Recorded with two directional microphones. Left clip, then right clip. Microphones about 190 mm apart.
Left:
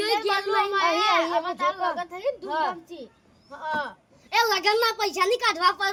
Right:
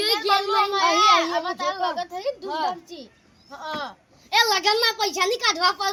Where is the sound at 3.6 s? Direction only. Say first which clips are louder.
Left 2 dB; 25° left (ahead or behind).